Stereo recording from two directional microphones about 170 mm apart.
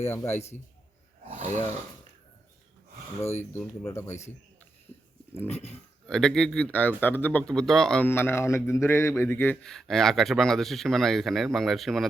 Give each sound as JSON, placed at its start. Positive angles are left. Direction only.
{"t": 0.0, "sound": "a man's voice", "side_deg": 15}
{"t": 0.3, "sound": "a man's voice", "side_deg": 40}
{"t": 3.5, "sound": "a man's voice", "side_deg": 15}
{"t": 5.3, "sound": "a man's voice", "side_deg": 10}